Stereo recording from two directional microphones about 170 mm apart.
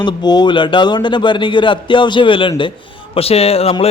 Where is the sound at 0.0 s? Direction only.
25° left (ahead or behind).